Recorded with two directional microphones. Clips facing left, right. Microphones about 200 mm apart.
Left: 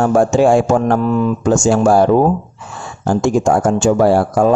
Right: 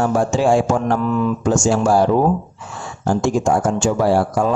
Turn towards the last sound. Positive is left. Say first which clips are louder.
# left 4 dB
turn(degrees=50)  # may be behind; listen again after turning